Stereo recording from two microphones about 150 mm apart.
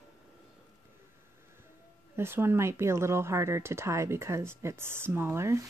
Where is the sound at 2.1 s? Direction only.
15° right (ahead or behind).